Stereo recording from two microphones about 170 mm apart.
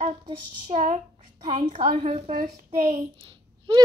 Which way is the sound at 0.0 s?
40° right (ahead or behind).